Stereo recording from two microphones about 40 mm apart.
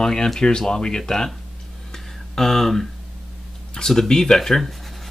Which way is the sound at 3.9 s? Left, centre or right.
Centre.